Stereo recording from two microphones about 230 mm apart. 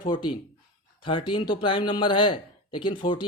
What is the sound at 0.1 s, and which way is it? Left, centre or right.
Speech, left.